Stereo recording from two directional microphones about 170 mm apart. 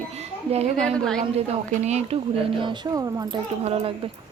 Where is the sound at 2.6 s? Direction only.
25° right (ahead or behind).